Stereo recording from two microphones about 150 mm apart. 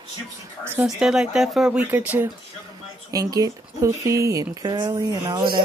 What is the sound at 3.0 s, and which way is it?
Speech, 25° right (ahead or behind).